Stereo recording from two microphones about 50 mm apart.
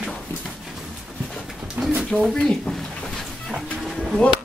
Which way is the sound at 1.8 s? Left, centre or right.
Right.